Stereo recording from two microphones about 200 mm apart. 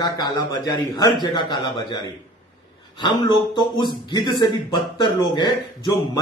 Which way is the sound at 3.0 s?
20° left (ahead or behind).